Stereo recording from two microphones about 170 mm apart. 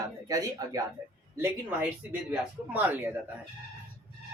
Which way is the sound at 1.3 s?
10° right (ahead or behind).